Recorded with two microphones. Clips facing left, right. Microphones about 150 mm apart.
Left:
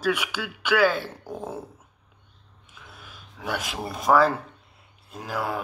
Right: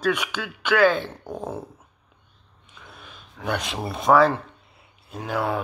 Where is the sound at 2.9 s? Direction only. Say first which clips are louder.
Right 2 dB; 5° left (ahead or behind).